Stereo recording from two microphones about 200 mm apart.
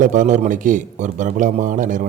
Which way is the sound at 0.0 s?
40° right (ahead or behind).